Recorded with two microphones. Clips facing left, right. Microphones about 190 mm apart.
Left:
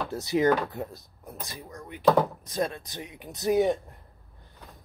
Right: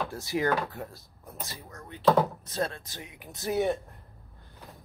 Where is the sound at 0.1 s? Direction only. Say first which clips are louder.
Left 8 dB; 20° left (ahead or behind).